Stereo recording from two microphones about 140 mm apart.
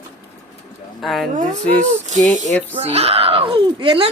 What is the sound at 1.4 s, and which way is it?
Speech, 65° right (ahead or behind).